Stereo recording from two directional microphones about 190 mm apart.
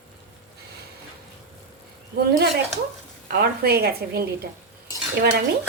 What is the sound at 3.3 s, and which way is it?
A woman's voice, 55° right (ahead or behind).